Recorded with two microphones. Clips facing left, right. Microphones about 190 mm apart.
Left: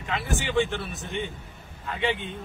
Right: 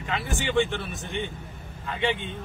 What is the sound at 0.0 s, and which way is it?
A man's voice, centre (ahead or behind).